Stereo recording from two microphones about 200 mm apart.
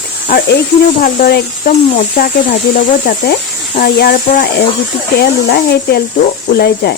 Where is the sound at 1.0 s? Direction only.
55° left (ahead or behind).